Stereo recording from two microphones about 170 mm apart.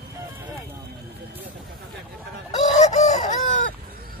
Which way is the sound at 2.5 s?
40° left (ahead or behind).